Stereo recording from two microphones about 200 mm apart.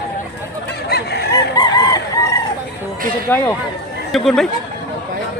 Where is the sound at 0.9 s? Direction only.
55° left (ahead or behind).